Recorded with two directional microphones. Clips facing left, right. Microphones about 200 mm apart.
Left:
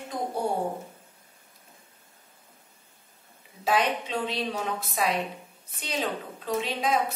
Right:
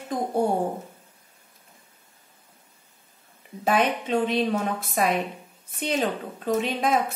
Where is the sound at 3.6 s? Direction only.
50° right (ahead or behind).